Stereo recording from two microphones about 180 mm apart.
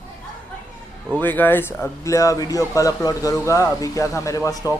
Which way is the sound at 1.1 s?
10° left (ahead or behind).